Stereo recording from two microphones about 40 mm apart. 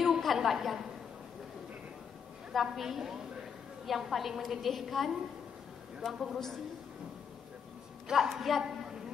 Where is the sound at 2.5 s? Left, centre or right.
Centre.